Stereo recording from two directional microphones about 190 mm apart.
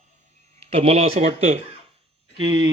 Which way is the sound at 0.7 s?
35° right (ahead or behind).